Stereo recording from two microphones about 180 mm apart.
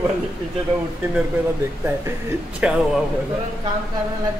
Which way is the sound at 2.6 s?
5° right (ahead or behind).